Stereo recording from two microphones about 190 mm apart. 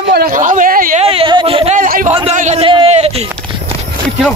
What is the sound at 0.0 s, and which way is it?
Speech, 55° right (ahead or behind).